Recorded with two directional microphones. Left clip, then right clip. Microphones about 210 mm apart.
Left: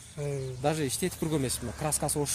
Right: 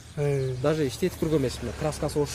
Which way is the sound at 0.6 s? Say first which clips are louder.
Right 1 dB; 55° left (ahead or behind).